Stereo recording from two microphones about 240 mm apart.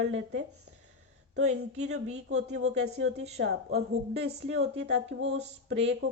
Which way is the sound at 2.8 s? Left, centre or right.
Right.